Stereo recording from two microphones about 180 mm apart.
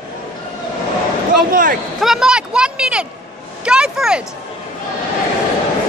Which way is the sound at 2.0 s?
5° right (ahead or behind).